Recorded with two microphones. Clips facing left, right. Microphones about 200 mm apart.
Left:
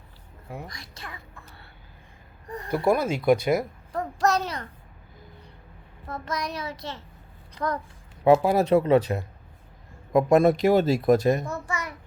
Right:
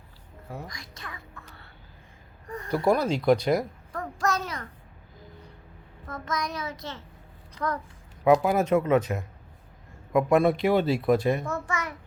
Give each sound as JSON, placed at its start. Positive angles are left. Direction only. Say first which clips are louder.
{"t": 0.7, "sound": "speech", "louder": "left 1 dB", "side_deg": 30}
{"t": 2.8, "sound": "speech", "louder": "left 1 dB", "side_deg": 5}
{"t": 3.9, "sound": "a sound", "louder": "left 4 dB", "side_deg": 35}
{"t": 6.1, "sound": "speech", "louder": "left 1 dB", "side_deg": 35}
{"t": 8.2, "sound": "speech", "louder": "left 2 dB", "side_deg": 30}
{"t": 11.4, "sound": "speech", "louder": "right 1 dB", "side_deg": 10}